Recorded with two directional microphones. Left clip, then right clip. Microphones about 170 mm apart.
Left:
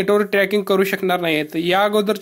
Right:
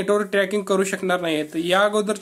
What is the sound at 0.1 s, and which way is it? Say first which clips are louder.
Speech: left 3 dB; 25° left (ahead or behind).